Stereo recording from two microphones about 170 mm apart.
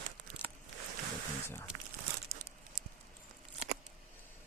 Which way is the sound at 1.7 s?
50° right (ahead or behind).